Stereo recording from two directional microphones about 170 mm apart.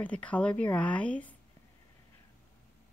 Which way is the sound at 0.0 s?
10° left (ahead or behind).